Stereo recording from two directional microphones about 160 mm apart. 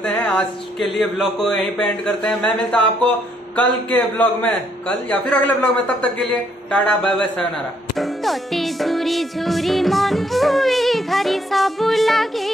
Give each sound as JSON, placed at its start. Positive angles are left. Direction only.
{"t": 0.0, "sound": "speech", "side_deg": 10}
{"t": 7.9, "sound": "music", "side_deg": 0}